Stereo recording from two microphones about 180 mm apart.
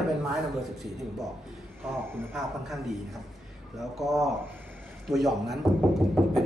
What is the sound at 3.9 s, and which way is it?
A man's voice, centre (ahead or behind).